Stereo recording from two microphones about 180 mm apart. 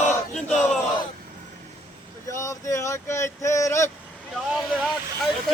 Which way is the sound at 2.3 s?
15° left (ahead or behind).